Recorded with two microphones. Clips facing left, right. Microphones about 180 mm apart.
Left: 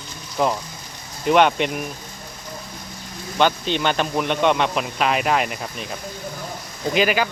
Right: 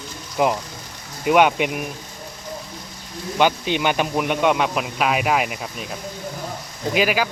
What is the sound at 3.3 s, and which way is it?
Speech, 10° right (ahead or behind).